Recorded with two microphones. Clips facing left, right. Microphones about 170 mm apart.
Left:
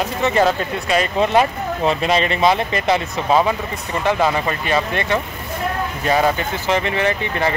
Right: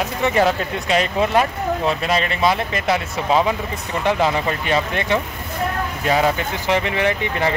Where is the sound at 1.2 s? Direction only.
Centre (ahead or behind).